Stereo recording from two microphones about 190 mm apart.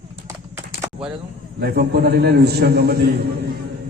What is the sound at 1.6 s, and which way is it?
A man's voice, 55° right (ahead or behind).